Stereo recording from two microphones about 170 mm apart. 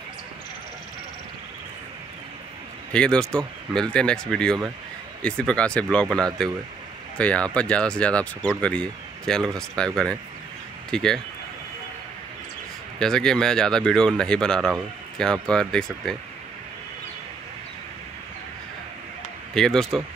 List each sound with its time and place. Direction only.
2.9 s speech: 5° left (ahead or behind)
10.9 s speech: 5° left (ahead or behind)
13.0 s speech: 5° left (ahead or behind)
19.5 s speech: 5° left (ahead or behind)